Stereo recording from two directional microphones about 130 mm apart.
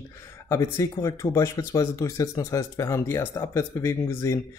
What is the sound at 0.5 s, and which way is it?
Speech, 25° left (ahead or behind).